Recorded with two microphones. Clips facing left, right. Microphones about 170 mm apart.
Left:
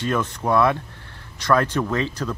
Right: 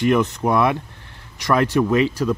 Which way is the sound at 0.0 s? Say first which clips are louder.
Right 6 dB; 20° right (ahead or behind).